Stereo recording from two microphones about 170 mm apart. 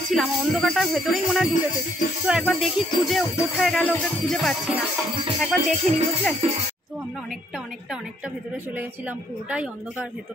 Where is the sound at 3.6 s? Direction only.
5° left (ahead or behind).